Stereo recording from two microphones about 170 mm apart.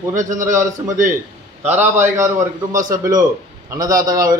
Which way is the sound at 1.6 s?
10° right (ahead or behind).